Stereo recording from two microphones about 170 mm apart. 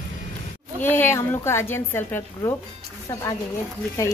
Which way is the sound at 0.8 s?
10° left (ahead or behind).